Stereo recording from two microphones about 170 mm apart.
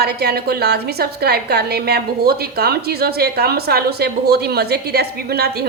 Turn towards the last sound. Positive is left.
turn(degrees=-70)  # may be behind; listen again after turning